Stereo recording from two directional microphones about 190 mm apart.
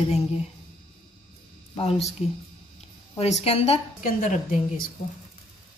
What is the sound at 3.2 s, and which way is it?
A woman's voice, 35° left (ahead or behind).